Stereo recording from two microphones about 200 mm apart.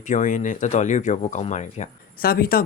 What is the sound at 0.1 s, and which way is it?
Speech, 40° left (ahead or behind).